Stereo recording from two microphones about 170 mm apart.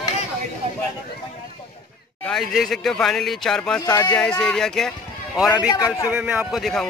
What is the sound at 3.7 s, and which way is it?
Speech, 20° left (ahead or behind).